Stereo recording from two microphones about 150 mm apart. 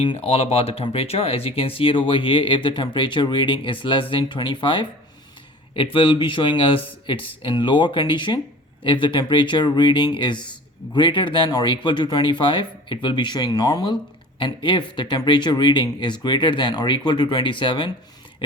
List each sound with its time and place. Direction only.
0.0 s speech: 40° left (ahead or behind)